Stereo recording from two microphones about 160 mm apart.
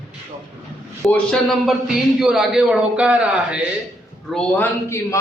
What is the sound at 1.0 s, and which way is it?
A man's voice, 5° left (ahead or behind).